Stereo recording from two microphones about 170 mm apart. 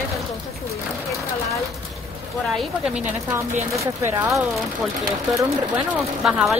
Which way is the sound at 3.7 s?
15° right (ahead or behind).